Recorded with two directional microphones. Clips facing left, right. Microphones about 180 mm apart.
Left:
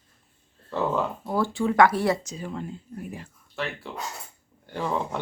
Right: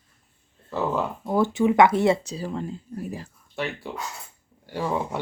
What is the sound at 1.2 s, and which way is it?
Speech, 20° right (ahead or behind).